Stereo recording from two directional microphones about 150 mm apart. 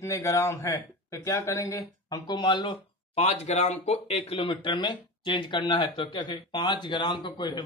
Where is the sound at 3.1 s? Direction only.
45° left (ahead or behind).